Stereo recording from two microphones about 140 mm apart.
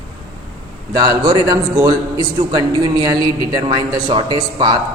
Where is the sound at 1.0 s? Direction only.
30° right (ahead or behind).